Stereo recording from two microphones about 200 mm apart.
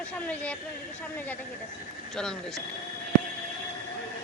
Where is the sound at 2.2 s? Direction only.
5° left (ahead or behind).